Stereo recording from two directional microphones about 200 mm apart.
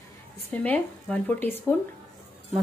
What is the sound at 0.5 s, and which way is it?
Speech, 5° left (ahead or behind).